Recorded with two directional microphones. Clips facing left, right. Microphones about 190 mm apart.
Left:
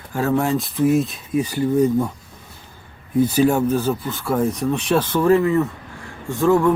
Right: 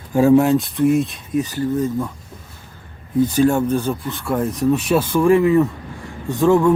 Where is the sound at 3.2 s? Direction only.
10° left (ahead or behind).